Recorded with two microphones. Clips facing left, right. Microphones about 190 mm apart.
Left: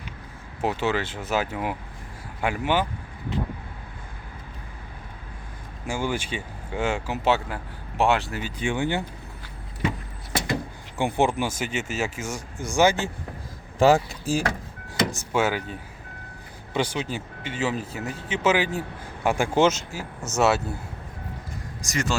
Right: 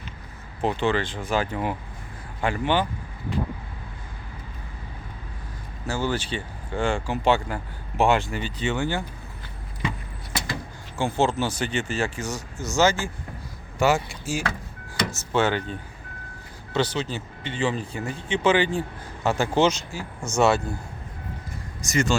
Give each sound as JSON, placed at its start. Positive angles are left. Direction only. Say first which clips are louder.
{"t": 0.6, "sound": "speech", "louder": "right 1 dB", "side_deg": 5}
{"t": 5.8, "sound": "speech", "louder": "right 1 dB", "side_deg": 10}
{"t": 10.9, "sound": "speech", "louder": "even", "side_deg": 15}
{"t": 13.7, "sound": "speech", "louder": "left 4 dB", "side_deg": 35}
{"t": 15.1, "sound": "speech", "louder": "right 5 dB", "side_deg": 10}
{"t": 21.8, "sound": "speech", "louder": "right 4 dB", "side_deg": 0}